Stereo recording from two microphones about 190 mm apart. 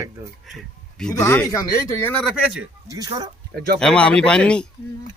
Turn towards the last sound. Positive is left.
turn(degrees=5)  # may be behind; listen again after turning